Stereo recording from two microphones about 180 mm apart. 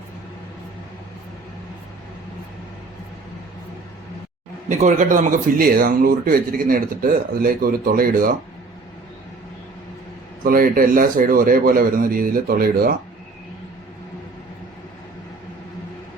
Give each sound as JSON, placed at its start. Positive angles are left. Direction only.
{"t": 4.7, "sound": "speech", "side_deg": -45}
{"t": 10.4, "sound": "speech", "side_deg": -50}